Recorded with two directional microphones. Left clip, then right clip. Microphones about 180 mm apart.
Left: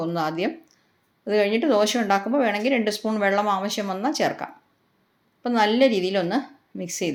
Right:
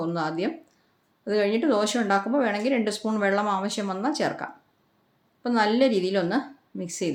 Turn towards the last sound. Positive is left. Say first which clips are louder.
# left 2 dB
turn(degrees=0)  # may be behind; listen again after turning